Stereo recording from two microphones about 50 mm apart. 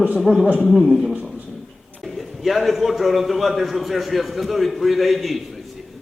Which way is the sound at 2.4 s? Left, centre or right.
Centre.